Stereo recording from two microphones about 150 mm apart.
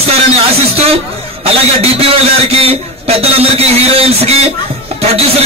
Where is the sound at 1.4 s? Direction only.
40° right (ahead or behind).